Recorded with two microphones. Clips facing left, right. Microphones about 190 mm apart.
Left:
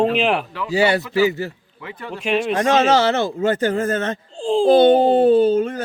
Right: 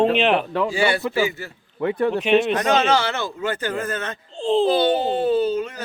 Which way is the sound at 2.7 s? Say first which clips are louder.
Left 4 dB; 40° left (ahead or behind).